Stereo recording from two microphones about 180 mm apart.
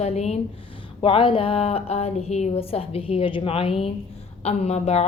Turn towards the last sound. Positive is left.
turn(degrees=35)  # may be behind; listen again after turning